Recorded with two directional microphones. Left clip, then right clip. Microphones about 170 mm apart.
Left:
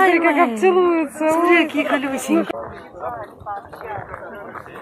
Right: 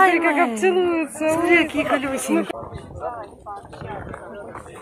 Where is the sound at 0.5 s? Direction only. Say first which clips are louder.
Left 4 dB; 25° left (ahead or behind).